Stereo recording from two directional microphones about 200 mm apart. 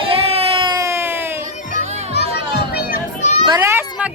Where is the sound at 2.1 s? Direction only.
55° left (ahead or behind).